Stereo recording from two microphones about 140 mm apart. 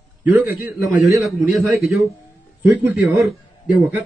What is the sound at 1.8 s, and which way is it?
Speech, 90° left.